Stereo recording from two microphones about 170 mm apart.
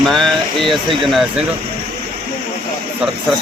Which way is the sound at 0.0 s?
Centre (ahead or behind).